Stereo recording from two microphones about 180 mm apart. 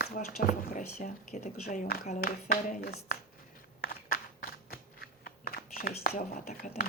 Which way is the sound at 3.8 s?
55° left (ahead or behind).